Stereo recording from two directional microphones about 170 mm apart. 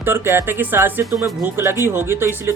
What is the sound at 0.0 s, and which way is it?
Speech, 15° right (ahead or behind).